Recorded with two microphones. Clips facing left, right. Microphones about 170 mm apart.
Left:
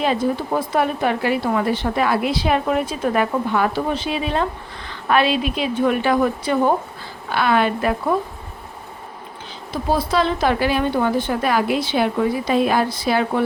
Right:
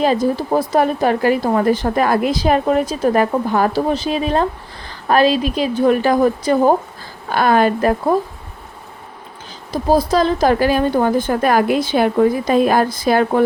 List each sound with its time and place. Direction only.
0.0 s a woman's voice: 40° right (ahead or behind)
9.7 s a woman's voice: 40° right (ahead or behind)